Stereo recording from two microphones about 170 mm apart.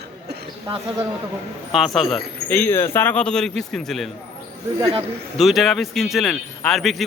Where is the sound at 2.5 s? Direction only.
10° left (ahead or behind).